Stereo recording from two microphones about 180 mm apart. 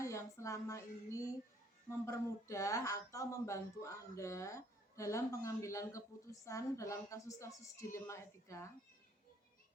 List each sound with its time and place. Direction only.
0.0 s speech: 15° left (ahead or behind)